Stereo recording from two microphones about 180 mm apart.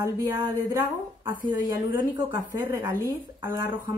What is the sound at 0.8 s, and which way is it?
Speech, 55° left (ahead or behind).